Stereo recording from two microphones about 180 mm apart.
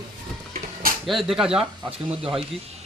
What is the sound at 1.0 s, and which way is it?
Speech, centre (ahead or behind).